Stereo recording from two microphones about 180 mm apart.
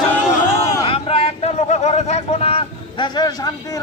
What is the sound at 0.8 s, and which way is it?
A man's voice, 30° left (ahead or behind).